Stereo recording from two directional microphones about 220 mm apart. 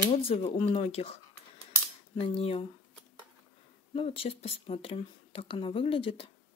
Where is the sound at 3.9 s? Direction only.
25° left (ahead or behind).